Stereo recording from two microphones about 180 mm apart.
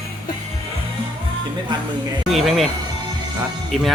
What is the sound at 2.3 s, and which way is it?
Speech, centre (ahead or behind).